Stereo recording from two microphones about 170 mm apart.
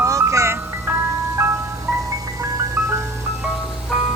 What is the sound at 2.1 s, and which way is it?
Music, 20° right (ahead or behind).